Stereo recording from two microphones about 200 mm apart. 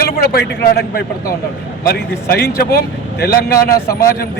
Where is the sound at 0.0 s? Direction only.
50° left (ahead or behind).